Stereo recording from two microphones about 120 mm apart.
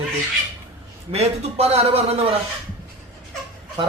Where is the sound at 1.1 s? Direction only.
60° right (ahead or behind).